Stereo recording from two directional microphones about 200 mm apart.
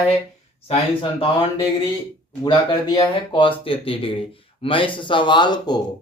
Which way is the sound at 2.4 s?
25° left (ahead or behind).